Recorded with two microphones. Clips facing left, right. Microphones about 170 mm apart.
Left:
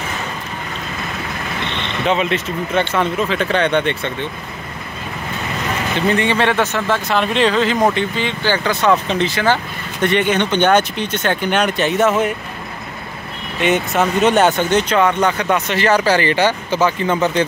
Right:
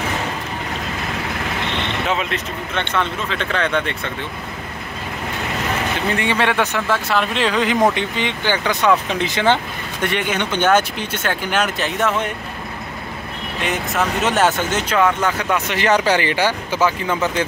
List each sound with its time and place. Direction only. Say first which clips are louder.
2.0 s speech: left 9 dB; centre (ahead or behind)
3.3 s speech: left 3 dB; 30° left (ahead or behind)
6.1 s speech: left 1 dB; 10° right (ahead or behind)
10.0 s speech: left 6 dB; 5° right (ahead or behind)
13.6 s speech: left 5 dB; centre (ahead or behind)